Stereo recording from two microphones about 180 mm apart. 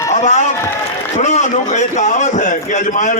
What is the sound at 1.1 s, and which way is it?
A man's voice, 40° left (ahead or behind).